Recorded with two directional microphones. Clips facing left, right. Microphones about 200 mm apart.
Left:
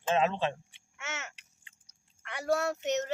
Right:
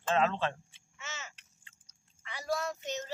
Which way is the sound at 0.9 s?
70° left (ahead or behind).